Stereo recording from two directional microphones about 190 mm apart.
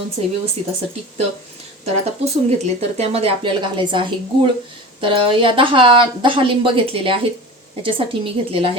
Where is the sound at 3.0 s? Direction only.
30° right (ahead or behind).